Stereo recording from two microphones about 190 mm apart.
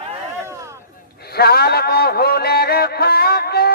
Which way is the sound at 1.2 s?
55° left (ahead or behind).